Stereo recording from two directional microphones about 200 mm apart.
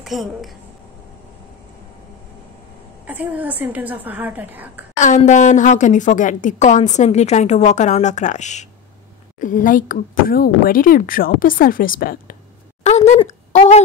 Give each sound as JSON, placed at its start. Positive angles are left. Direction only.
{"t": 0.0, "sound": "a woman's voice", "side_deg": 0}
{"t": 3.1, "sound": "a woman's voice", "side_deg": -5}
{"t": 4.9, "sound": "a woman's voice", "side_deg": 35}
{"t": 12.8, "sound": "speech", "side_deg": 35}